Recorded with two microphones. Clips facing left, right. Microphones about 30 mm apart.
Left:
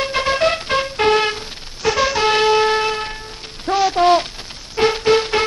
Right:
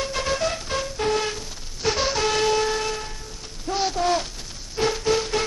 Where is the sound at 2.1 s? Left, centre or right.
Left.